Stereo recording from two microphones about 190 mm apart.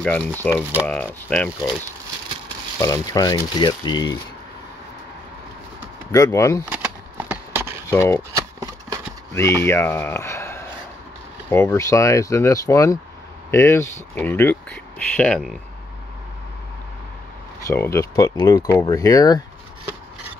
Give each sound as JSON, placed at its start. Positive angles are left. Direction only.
{"t": 0.0, "sound": "speech", "side_deg": 10}
{"t": 0.5, "sound": "speech", "side_deg": -10}
{"t": 0.8, "sound": "speech", "side_deg": 5}
{"t": 2.8, "sound": "speech", "side_deg": 20}
{"t": 6.1, "sound": "speech", "side_deg": 15}
{"t": 6.7, "sound": "a sound", "side_deg": -10}
{"t": 7.8, "sound": "speech", "side_deg": 15}
{"t": 8.4, "sound": "a sound", "side_deg": -15}
{"t": 9.3, "sound": "speech", "side_deg": 15}
{"t": 17.6, "sound": "speech", "side_deg": 15}